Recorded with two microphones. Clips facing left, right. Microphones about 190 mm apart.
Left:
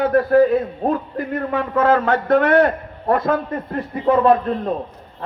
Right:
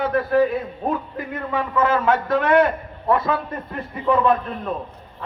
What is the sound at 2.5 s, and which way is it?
Speech, 45° left (ahead or behind).